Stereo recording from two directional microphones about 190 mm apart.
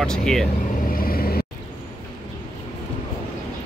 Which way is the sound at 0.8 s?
50° left (ahead or behind).